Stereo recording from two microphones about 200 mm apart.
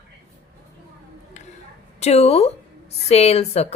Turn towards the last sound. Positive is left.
turn(degrees=30)  # may be behind; listen again after turning